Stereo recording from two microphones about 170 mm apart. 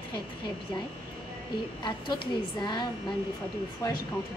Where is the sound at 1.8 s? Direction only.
25° left (ahead or behind).